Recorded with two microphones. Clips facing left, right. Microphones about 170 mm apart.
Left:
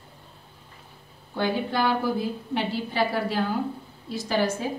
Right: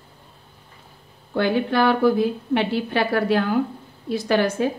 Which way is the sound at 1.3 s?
70° right (ahead or behind).